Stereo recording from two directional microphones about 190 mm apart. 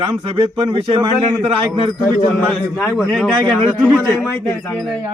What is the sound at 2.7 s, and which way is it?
A man's voice, centre (ahead or behind).